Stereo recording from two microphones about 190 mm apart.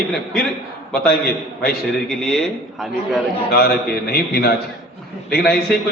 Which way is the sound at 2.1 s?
5° left (ahead or behind).